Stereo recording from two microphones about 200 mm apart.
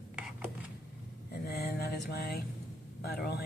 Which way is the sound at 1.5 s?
50° left (ahead or behind).